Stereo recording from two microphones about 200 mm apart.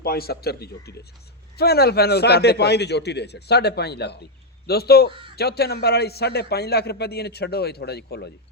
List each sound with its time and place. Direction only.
0.0 s a man's voice: 50° left (ahead or behind)